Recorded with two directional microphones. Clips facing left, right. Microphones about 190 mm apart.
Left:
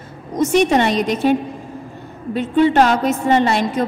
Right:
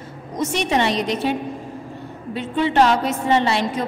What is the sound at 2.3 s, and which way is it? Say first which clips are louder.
A woman's voice: left 5 dB; 45° left (ahead or behind).